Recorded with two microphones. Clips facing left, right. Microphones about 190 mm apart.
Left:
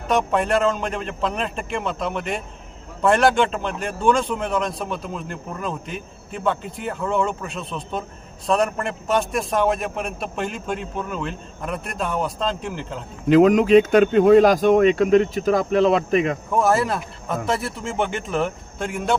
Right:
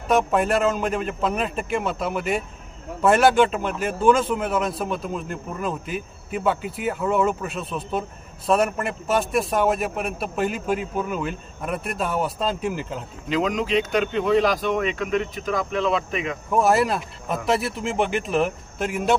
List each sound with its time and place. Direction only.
0.1 s speech: centre (ahead or behind)
13.2 s speech: 50° left (ahead or behind)
16.5 s speech: centre (ahead or behind)